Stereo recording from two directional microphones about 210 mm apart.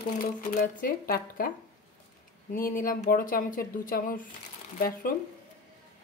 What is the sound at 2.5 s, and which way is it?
Speech, 40° left (ahead or behind).